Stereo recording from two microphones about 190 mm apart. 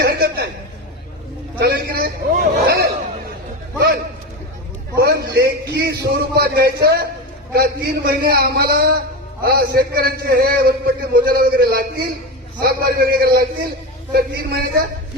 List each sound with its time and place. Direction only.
0.0 s chuckle: 55° right (ahead or behind)
1.5 s a sound: 55° right (ahead or behind)
6.3 s a man's voice: 55° right (ahead or behind)